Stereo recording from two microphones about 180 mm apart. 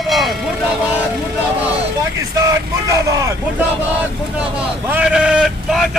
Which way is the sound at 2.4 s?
20° right (ahead or behind).